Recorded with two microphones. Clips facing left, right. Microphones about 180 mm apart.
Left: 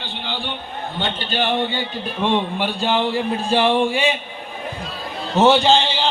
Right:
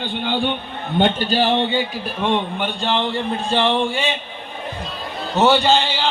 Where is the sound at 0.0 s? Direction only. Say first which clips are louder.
Right 7 dB; 50° right (ahead or behind).